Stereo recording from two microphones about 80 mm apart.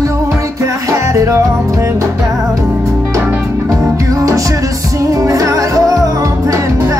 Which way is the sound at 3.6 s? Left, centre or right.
Right.